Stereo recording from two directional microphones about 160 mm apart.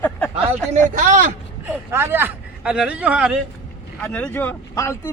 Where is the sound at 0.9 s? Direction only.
55° right (ahead or behind).